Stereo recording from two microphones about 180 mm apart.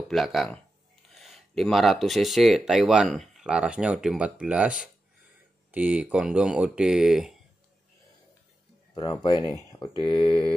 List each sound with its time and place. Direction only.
0.1 s speech: centre (ahead or behind)
8.9 s mantra: 25° left (ahead or behind)